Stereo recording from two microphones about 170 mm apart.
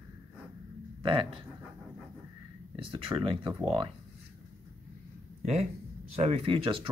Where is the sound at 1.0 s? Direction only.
30° right (ahead or behind).